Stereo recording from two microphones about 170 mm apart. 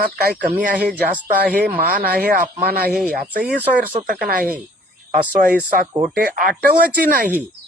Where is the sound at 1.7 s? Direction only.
60° right (ahead or behind).